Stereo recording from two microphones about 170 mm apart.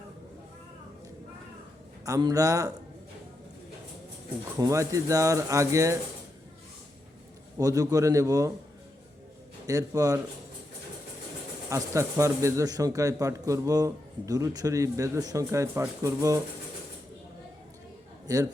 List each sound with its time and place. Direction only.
2.0 s speech: 20° right (ahead or behind)
4.5 s speech: 15° right (ahead or behind)
7.6 s speech: 20° right (ahead or behind)
9.6 s speech: 20° right (ahead or behind)
11.7 s speech: 15° right (ahead or behind)
18.3 s speech: 20° right (ahead or behind)